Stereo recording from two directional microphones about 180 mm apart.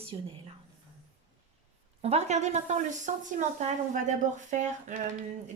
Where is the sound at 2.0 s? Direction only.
35° right (ahead or behind).